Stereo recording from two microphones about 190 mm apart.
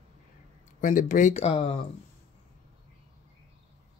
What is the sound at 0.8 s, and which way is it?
Speech, 45° left (ahead or behind).